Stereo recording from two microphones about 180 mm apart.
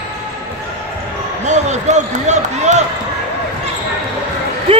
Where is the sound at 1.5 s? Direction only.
40° right (ahead or behind).